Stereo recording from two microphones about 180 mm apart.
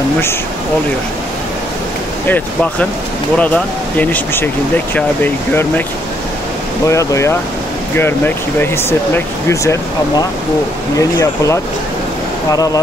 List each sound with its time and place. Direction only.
2.2 s speech: 10° left (ahead or behind)
6.9 s speech: 15° left (ahead or behind)
8.5 s speech: 10° left (ahead or behind)